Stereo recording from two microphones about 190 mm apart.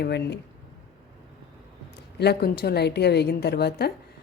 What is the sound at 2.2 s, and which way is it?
A woman's voice, 55° left (ahead or behind).